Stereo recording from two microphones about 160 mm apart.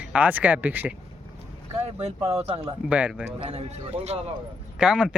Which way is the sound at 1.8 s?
45° right (ahead or behind).